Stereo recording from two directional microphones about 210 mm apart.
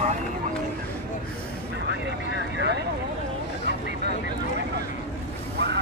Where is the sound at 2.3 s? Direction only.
55° right (ahead or behind).